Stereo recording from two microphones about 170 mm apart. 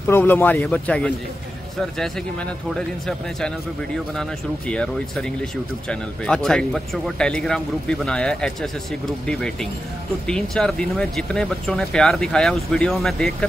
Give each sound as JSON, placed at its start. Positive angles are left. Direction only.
{"t": 0.0, "sound": "speech", "side_deg": 10}
{"t": 2.7, "sound": "speech", "side_deg": 5}